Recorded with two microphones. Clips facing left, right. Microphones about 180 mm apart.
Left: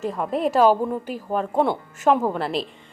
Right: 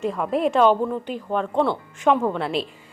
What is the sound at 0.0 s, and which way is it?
A woman's voice, centre (ahead or behind).